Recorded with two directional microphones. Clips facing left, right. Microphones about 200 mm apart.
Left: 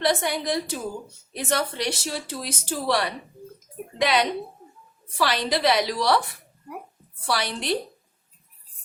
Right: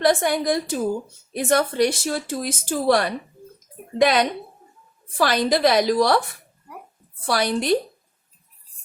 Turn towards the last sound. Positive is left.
turn(degrees=-45)  # may be behind; listen again after turning